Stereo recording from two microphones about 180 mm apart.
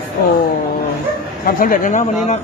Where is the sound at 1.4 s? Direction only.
50° left (ahead or behind).